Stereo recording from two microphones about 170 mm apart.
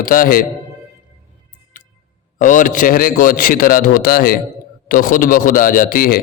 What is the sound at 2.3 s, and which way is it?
A man's voice, 50° left (ahead or behind).